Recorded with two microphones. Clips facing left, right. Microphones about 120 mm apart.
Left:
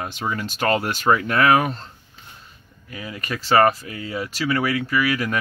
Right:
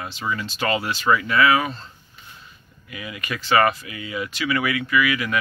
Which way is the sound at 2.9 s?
35° left (ahead or behind).